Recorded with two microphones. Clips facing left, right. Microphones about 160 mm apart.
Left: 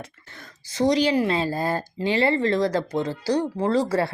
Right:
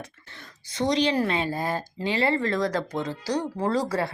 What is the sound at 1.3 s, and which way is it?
A woman's voice, 35° left (ahead or behind).